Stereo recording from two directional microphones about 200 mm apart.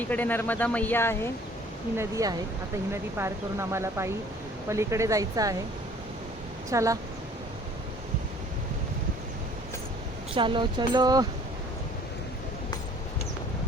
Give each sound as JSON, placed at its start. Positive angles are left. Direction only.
{"t": 0.0, "sound": "speech", "side_deg": 10}
{"t": 2.0, "sound": "speech", "side_deg": -15}
{"t": 6.7, "sound": "speech", "side_deg": -15}
{"t": 10.3, "sound": "speech", "side_deg": -25}